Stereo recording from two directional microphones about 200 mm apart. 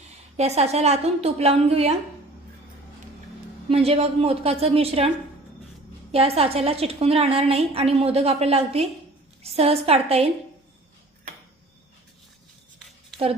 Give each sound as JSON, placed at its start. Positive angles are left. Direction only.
{"t": 0.3, "sound": "a woman's voice", "side_deg": -30}
{"t": 3.7, "sound": "a woman's voice", "side_deg": -30}